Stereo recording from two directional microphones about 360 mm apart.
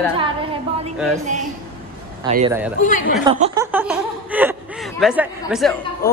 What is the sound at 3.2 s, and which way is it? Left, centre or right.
Speech, centre.